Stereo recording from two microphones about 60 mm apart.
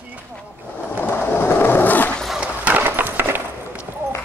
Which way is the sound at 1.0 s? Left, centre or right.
Left.